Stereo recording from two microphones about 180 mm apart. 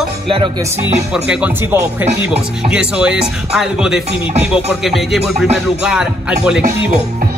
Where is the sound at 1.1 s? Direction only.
5° right (ahead or behind).